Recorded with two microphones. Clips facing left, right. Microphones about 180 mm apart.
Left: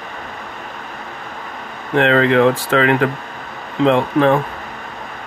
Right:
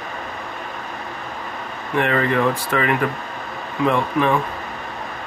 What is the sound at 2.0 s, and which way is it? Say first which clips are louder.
Speech: left 6 dB; 90° left.